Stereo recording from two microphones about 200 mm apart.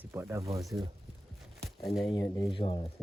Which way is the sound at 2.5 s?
25° left (ahead or behind).